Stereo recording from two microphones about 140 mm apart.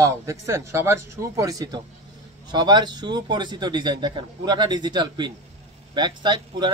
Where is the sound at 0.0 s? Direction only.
20° right (ahead or behind).